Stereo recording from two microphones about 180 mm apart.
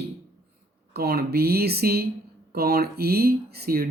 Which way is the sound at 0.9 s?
60° right (ahead or behind).